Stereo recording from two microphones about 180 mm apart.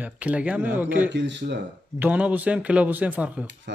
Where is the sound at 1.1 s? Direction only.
80° right.